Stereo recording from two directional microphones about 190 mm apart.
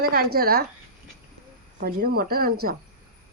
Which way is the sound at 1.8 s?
50° right (ahead or behind).